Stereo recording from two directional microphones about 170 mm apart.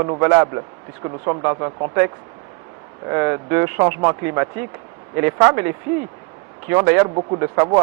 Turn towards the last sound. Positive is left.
turn(degrees=-20)  # may be behind; listen again after turning